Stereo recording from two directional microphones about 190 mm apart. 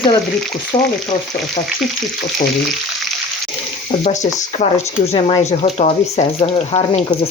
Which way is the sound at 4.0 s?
35° left (ahead or behind).